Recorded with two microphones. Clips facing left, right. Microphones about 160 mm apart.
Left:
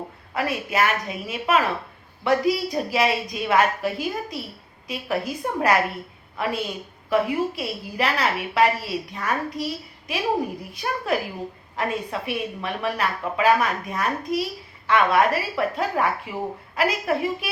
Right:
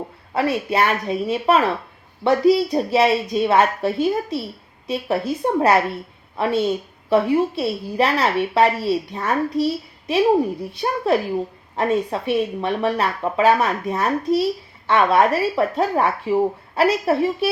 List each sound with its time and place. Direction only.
0.3 s a woman's voice: 30° right (ahead or behind)